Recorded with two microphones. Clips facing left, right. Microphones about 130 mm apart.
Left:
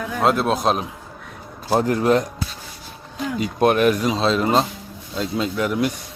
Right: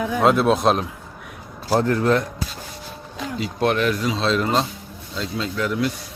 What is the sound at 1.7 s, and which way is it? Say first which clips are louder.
Speech: left 1 dB; 15° left (ahead or behind).